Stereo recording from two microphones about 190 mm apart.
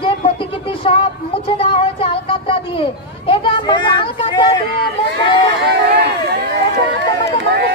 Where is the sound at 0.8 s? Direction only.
30° left (ahead or behind).